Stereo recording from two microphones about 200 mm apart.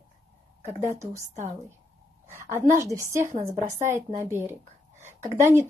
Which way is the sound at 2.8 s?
15° right (ahead or behind).